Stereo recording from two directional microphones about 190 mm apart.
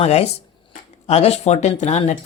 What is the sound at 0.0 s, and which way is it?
A man's voice, 35° left (ahead or behind).